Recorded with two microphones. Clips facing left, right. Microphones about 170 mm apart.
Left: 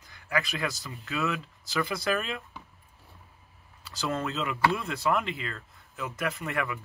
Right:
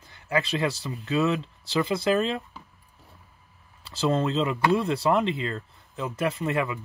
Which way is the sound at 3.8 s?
30° right (ahead or behind).